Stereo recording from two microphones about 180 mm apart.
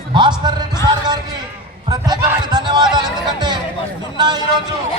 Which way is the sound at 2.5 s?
25° right (ahead or behind).